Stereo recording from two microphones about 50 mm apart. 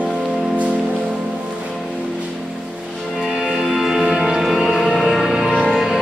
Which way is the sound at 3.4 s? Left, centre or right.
Centre.